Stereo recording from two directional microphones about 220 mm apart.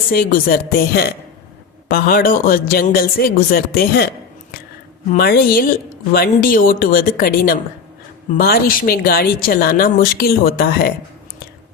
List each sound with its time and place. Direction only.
0.1 s a man's voice: 40° left (ahead or behind)
5.1 s a man's voice: 45° left (ahead or behind)